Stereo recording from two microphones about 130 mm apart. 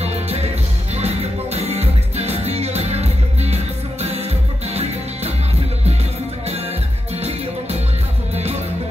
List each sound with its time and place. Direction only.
0.0 s music: 55° right (ahead or behind)